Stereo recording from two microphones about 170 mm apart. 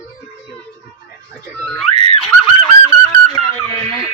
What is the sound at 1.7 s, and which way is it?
Speech, centre (ahead or behind).